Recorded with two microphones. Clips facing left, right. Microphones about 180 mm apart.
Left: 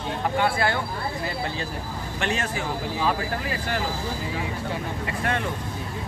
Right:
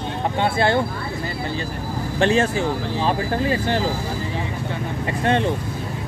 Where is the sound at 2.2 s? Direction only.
30° right (ahead or behind).